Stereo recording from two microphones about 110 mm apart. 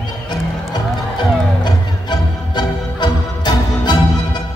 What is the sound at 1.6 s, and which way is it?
Music, 40° left (ahead or behind).